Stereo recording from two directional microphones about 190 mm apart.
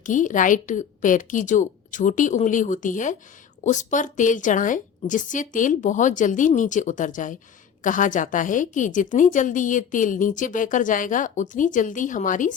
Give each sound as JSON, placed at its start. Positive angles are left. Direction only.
{"t": 0.0, "sound": "a woman's voice", "side_deg": 40}